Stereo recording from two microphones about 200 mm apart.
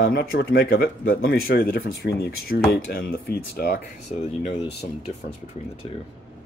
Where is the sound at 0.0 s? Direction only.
50° left (ahead or behind).